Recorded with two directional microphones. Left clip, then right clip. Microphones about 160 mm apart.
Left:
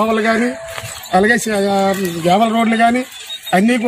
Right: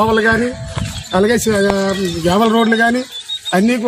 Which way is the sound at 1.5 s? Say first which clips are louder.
Even; 25° right (ahead or behind).